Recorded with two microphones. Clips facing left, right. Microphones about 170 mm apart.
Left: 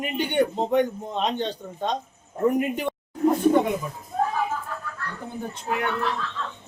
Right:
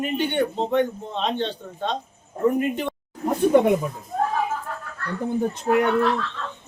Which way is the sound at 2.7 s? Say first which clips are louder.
Even; 10° left (ahead or behind).